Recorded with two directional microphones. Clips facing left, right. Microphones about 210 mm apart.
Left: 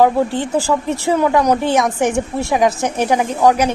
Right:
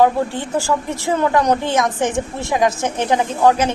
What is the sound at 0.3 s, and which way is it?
A woman's voice, 15° left (ahead or behind).